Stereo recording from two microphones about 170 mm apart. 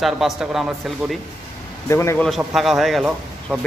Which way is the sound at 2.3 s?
Centre (ahead or behind).